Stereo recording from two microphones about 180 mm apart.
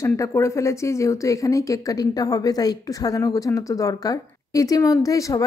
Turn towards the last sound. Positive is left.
turn(degrees=20)  # may be behind; listen again after turning